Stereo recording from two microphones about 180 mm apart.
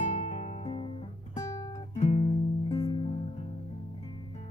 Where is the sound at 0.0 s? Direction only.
40° left (ahead or behind).